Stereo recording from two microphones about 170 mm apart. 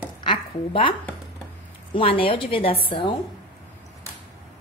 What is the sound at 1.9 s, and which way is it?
A woman's voice, 30° left (ahead or behind).